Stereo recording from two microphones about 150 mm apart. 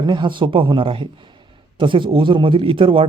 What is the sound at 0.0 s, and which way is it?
A man's voice, 30° right (ahead or behind).